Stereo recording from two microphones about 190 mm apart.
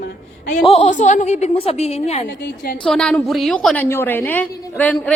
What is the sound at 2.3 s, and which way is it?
Speech, 60° left (ahead or behind).